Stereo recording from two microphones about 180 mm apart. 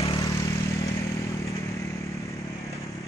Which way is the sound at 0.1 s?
20° left (ahead or behind).